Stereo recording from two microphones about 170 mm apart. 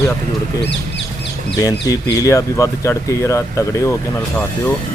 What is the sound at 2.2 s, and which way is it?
Speech, 20° left (ahead or behind).